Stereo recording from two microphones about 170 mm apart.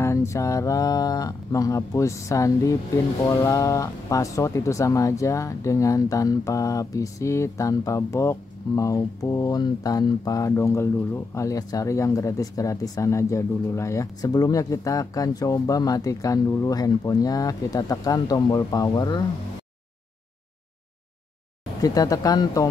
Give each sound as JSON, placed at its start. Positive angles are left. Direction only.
{"t": 0.0, "sound": "speech", "side_deg": 15}
{"t": 21.8, "sound": "speech", "side_deg": 20}